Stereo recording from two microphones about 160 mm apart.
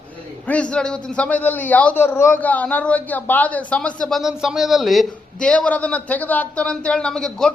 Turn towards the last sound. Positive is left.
turn(degrees=5)  # may be behind; listen again after turning